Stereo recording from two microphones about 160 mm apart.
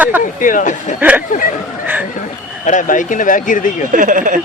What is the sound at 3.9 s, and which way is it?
Speech, 55° right (ahead or behind).